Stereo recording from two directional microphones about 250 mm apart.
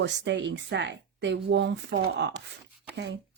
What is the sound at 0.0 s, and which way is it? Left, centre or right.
Speech, right.